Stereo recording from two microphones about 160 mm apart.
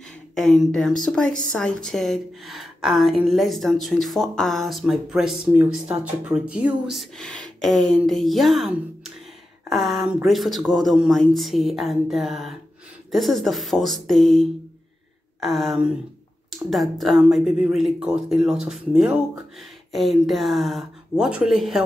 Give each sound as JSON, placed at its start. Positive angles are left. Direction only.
{"t": 0.3, "sound": "a woman's voice", "side_deg": 0}